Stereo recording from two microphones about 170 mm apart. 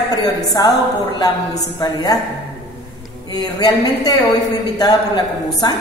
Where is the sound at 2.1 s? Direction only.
20° left (ahead or behind).